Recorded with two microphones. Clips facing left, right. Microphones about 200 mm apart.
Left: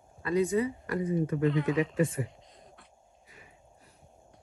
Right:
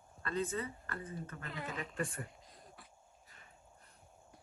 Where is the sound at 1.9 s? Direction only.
Centre (ahead or behind).